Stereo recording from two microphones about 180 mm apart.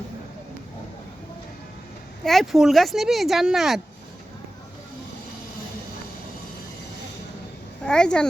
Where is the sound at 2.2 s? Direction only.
Centre (ahead or behind).